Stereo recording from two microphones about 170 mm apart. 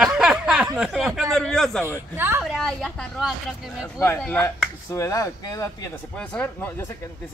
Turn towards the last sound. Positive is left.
turn(degrees=5)  # may be behind; listen again after turning